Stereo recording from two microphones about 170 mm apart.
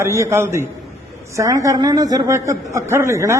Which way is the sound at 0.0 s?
15° right (ahead or behind).